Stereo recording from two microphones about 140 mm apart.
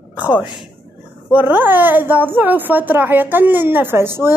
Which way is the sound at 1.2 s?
10° right (ahead or behind).